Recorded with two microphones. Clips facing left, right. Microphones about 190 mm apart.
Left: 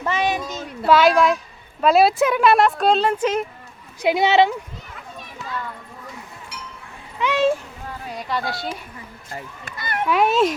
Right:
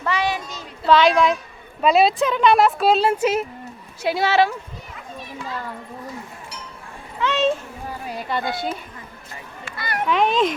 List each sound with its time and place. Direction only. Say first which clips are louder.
0.0 s a sound: left 1 dB; 20° left (ahead or behind)
0.9 s speech: left 1 dB; 5° left (ahead or behind)
4.0 s speech: left 2 dB; 20° left (ahead or behind)
7.2 s speech: left 1 dB; 10° left (ahead or behind)
8.3 s speech: right 1 dB; centre (ahead or behind)
9.7 s speech: even; 20° left (ahead or behind)
10.1 s speech: left 1 dB; 5° left (ahead or behind)